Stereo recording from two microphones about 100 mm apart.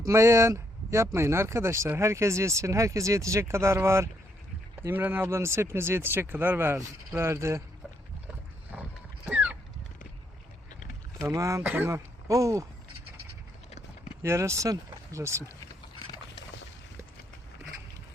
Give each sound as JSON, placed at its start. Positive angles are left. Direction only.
{"t": 0.1, "sound": "speech", "side_deg": -30}
{"t": 8.7, "sound": "a sound", "side_deg": -15}
{"t": 11.3, "sound": "speech", "side_deg": -35}
{"t": 11.6, "sound": "speech", "side_deg": -20}
{"t": 11.9, "sound": "speech", "side_deg": -35}
{"t": 13.7, "sound": "clip-clop", "side_deg": 90}
{"t": 14.2, "sound": "speech", "side_deg": -30}